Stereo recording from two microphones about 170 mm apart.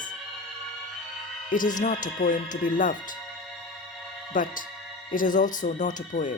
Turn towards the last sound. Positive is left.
turn(degrees=45)  # may be behind; listen again after turning